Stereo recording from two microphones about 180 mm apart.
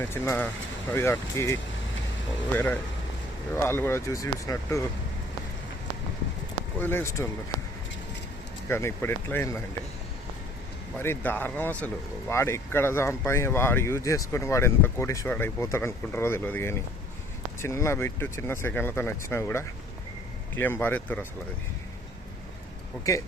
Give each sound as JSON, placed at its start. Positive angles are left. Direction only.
{"t": 0.0, "sound": "speech", "side_deg": 15}
{"t": 3.5, "sound": "speech", "side_deg": 15}
{"t": 6.7, "sound": "speech", "side_deg": 10}
{"t": 8.7, "sound": "speech", "side_deg": 15}
{"t": 10.9, "sound": "speech", "side_deg": 10}